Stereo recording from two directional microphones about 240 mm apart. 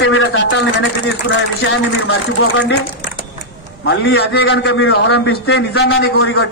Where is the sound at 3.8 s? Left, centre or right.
Left.